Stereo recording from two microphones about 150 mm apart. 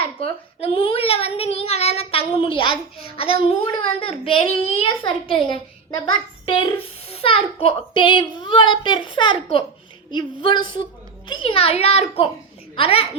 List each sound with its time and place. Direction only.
0.0 s a child's voice: 40° left (ahead or behind)